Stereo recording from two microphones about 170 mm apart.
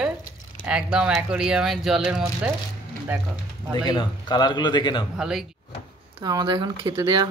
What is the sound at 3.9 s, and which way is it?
A man's voice, 25° left (ahead or behind).